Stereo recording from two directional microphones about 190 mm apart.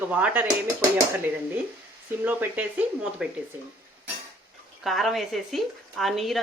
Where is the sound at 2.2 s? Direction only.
10° right (ahead or behind).